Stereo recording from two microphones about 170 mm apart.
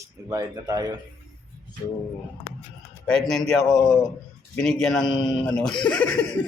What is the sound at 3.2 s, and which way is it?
A man's voice, centre (ahead or behind).